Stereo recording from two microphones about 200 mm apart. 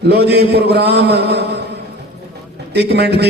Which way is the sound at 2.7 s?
55° right (ahead or behind).